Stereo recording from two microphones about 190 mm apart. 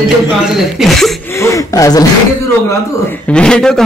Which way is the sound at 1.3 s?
15° left (ahead or behind).